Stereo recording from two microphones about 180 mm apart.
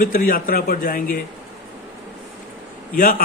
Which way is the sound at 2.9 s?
50° left (ahead or behind).